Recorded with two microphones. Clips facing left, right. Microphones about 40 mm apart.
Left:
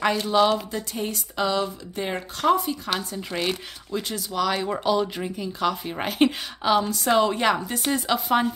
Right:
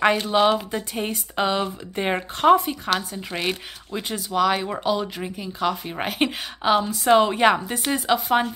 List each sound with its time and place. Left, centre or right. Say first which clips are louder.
0.0 s a woman's voice: right 2 dB; right
3.0 s a woman's voice: even; centre